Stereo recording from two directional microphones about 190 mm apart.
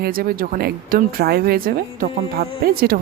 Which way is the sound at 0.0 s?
50° right (ahead or behind).